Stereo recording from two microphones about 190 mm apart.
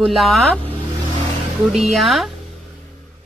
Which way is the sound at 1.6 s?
Centre (ahead or behind).